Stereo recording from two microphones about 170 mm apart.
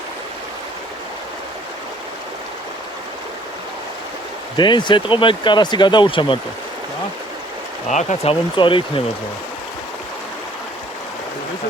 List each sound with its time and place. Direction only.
4.5 s speech: 25° left (ahead or behind)
7.9 s speech: 40° left (ahead or behind)